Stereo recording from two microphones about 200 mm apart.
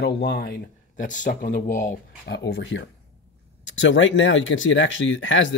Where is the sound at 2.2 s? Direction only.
60° left (ahead or behind).